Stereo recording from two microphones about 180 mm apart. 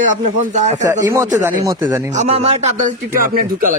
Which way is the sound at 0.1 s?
40° right (ahead or behind).